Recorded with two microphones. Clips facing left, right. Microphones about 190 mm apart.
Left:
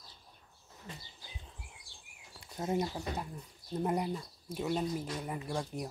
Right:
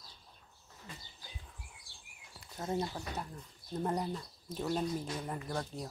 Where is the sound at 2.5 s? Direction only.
20° left (ahead or behind).